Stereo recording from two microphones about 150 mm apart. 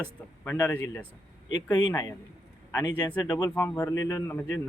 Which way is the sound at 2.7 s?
30° left (ahead or behind).